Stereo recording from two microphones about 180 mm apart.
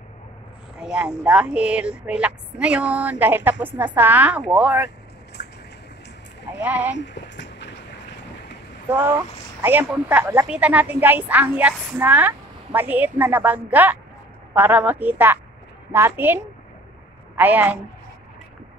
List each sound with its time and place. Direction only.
0.7 s a woman's voice: 5° right (ahead or behind)
5.4 s a sound: 70° left (ahead or behind)
6.6 s a woman's voice: 10° right (ahead or behind)
7.0 s a sound: 80° left
9.6 s a woman's voice: 10° right (ahead or behind)
17.4 s a woman's voice: 10° right (ahead or behind)